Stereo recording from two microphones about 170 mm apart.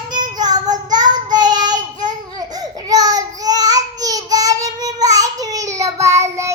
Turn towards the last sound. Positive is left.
turn(degrees=-15)  # may be behind; listen again after turning